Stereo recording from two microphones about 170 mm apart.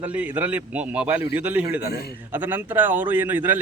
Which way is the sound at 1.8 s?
70° left (ahead or behind).